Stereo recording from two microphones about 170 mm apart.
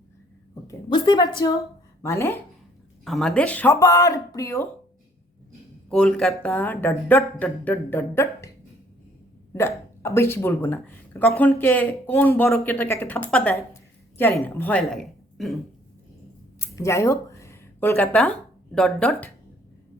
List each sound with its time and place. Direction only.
0.5 s a woman's voice: 25° left (ahead or behind)
3.0 s speech: centre (ahead or behind)
3.8 s a sound: 20° left (ahead or behind)
5.9 s speech: 5° left (ahead or behind)
9.5 s a woman's voice: 15° left (ahead or behind)
16.6 s speech: 15° left (ahead or behind)